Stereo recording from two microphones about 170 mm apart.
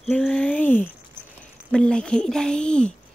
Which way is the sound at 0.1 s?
5° left (ahead or behind).